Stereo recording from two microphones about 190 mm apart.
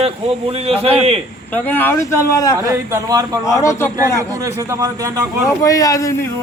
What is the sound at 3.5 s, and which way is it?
Speech, 15° left (ahead or behind).